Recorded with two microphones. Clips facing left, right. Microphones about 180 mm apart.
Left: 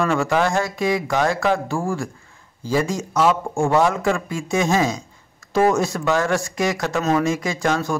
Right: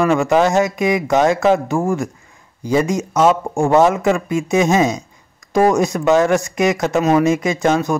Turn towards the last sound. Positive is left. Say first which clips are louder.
# right 5 dB
turn(degrees=-20)  # may be behind; listen again after turning